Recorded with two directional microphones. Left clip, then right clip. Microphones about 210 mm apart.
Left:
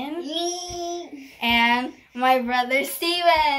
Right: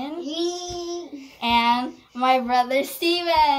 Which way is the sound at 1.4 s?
30° left (ahead or behind).